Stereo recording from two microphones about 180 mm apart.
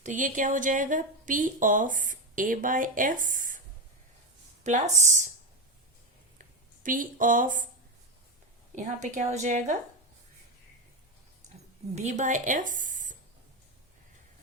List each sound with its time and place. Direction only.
0.0 s speech: 45° right (ahead or behind)
4.6 s speech: 40° right (ahead or behind)
6.4 s a sound: 50° right (ahead or behind)
8.7 s a woman's voice: 40° right (ahead or behind)
11.9 s a woman's voice: 40° right (ahead or behind)